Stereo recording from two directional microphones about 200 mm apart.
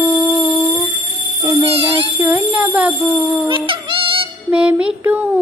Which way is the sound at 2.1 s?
10° right (ahead or behind).